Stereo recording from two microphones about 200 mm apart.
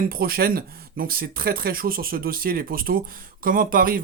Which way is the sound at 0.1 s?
50° right (ahead or behind).